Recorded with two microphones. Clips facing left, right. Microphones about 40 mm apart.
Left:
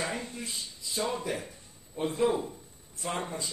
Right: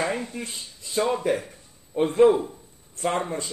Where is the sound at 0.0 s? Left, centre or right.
Right.